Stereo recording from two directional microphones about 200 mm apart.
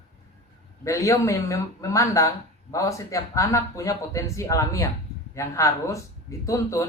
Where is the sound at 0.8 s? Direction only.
15° left (ahead or behind).